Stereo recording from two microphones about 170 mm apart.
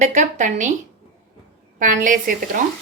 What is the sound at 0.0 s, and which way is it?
Speech, 45° right (ahead or behind).